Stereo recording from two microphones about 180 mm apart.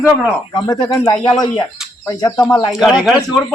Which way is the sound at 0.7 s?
20° left (ahead or behind).